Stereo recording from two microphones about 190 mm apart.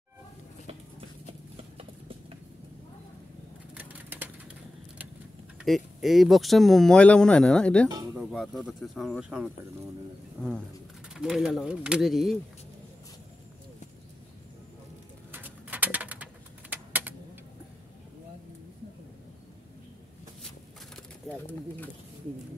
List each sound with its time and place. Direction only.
3.7 s a sound: 10° right (ahead or behind)
5.6 s speech: centre (ahead or behind)
7.9 s speech: 20° right (ahead or behind)
8.2 s speech: centre (ahead or behind)
11.1 s speech: 5° right (ahead or behind)
15.3 s bird: 10° right (ahead or behind)
16.7 s typing: 10° right (ahead or behind)
21.5 s speech: 10° left (ahead or behind)